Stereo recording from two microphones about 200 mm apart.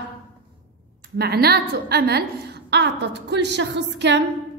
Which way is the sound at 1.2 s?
50° right (ahead or behind).